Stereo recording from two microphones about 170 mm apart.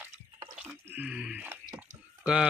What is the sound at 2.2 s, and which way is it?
Speech, 5° right (ahead or behind).